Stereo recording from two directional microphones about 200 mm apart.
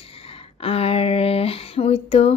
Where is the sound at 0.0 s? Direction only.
30° left (ahead or behind).